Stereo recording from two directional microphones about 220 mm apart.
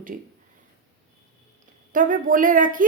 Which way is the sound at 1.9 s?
35° right (ahead or behind).